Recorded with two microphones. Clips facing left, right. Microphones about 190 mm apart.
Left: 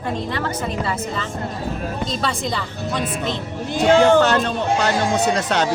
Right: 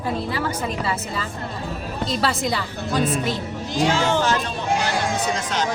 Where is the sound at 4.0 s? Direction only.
60° left (ahead or behind).